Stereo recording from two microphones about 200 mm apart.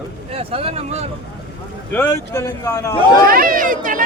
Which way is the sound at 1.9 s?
10° left (ahead or behind).